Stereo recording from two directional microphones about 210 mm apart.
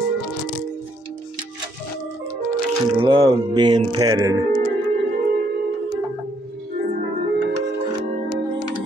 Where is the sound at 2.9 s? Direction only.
25° right (ahead or behind).